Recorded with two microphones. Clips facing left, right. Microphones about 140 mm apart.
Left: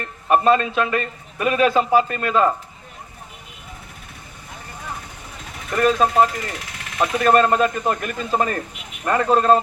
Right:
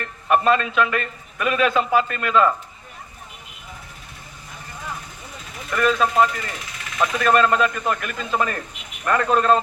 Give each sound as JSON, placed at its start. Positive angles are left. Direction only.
{"t": 0.0, "sound": "a man's voice", "side_deg": 35}
{"t": 5.7, "sound": "a man's voice", "side_deg": 35}